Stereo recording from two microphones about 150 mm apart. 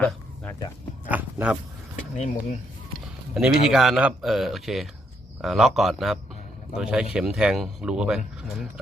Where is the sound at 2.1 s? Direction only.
50° left (ahead or behind).